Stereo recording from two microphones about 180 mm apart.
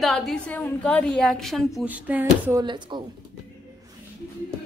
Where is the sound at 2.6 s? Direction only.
25° right (ahead or behind).